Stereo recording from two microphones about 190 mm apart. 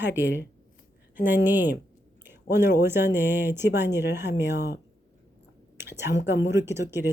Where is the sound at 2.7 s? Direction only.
10° right (ahead or behind).